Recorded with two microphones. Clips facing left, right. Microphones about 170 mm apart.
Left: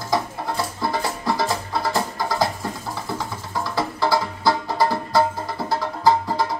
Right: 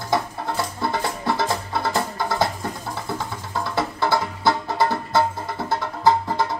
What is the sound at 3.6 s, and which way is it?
Music, 25° right (ahead or behind).